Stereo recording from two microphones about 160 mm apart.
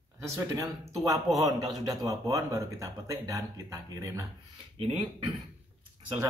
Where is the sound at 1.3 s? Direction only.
Centre (ahead or behind).